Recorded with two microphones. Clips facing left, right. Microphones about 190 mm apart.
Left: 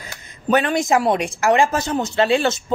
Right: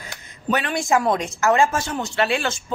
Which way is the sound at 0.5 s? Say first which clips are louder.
Left 5 dB; 40° left (ahead or behind).